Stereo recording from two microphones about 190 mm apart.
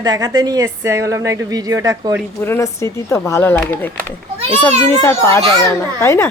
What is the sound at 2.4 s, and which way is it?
A child's voice, 15° left (ahead or behind).